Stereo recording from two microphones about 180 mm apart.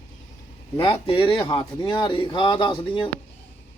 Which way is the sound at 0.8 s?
30° left (ahead or behind).